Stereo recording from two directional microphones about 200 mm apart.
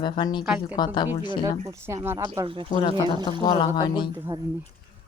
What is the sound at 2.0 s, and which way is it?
Speech, 15° right (ahead or behind).